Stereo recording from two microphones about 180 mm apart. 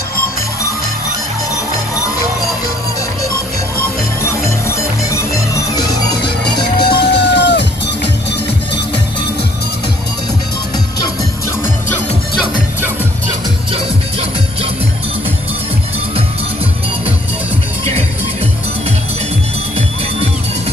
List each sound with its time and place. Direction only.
5.8 s music: 20° left (ahead or behind)
7.1 s music: 75° left (ahead or behind)